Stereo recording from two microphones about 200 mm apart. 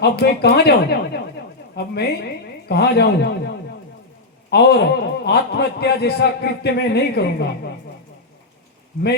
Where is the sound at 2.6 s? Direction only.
55° left (ahead or behind).